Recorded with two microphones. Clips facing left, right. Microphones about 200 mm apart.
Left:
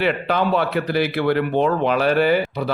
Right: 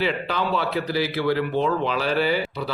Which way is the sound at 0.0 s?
55° left (ahead or behind).